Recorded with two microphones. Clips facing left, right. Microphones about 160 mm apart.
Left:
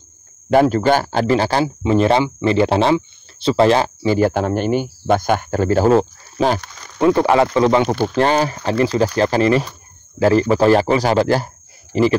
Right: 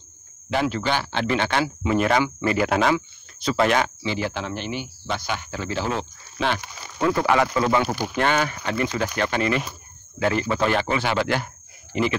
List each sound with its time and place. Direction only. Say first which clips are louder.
0.5 s speech: left 10 dB; 45° left (ahead or behind); by 3.9 s 30° left (ahead or behind)
4.0 s speech: left 11 dB; 45° left (ahead or behind)
7.0 s speech: left 7 dB; 30° left (ahead or behind)